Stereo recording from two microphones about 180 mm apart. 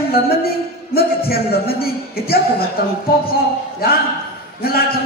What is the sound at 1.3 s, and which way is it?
Speech, 60° left (ahead or behind).